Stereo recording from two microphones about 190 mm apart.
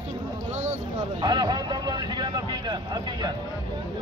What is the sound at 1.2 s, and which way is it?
Speech, 25° right (ahead or behind).